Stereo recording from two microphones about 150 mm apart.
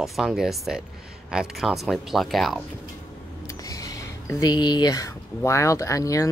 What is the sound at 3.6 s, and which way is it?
Speech, 25° left (ahead or behind).